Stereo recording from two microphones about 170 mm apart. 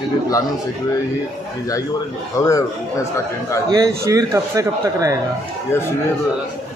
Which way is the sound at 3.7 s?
20° right (ahead or behind).